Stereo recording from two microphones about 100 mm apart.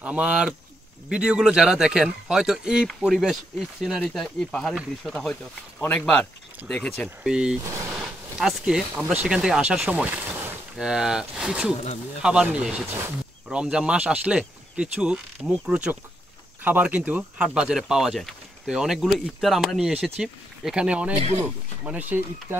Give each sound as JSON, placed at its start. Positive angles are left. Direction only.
{"t": 0.0, "sound": "speech", "side_deg": -10}
{"t": 7.2, "sound": "speech", "side_deg": -5}
{"t": 9.0, "sound": "speech", "side_deg": -20}
{"t": 9.3, "sound": "speech", "side_deg": -5}
{"t": 10.8, "sound": "speech", "side_deg": -5}